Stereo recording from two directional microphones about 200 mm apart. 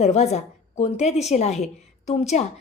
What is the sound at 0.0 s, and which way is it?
A woman's voice, 35° left (ahead or behind).